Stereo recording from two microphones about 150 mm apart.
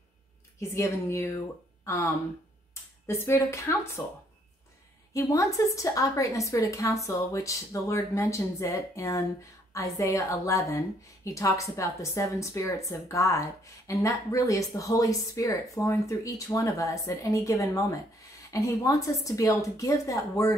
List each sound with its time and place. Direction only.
0.6 s a woman's voice: 20° left (ahead or behind)
5.1 s a woman's voice: 20° left (ahead or behind)